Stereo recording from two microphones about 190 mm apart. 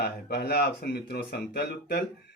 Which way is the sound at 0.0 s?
60° left (ahead or behind).